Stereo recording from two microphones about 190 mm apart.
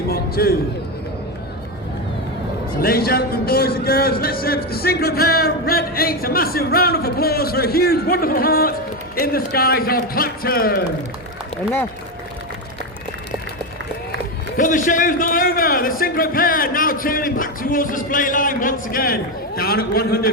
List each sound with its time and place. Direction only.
0.1 s a sound: 55° left (ahead or behind)
2.8 s speech: 50° left (ahead or behind)
14.5 s speech: 45° left (ahead or behind)